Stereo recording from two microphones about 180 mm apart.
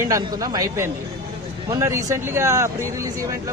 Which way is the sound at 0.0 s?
20° right (ahead or behind).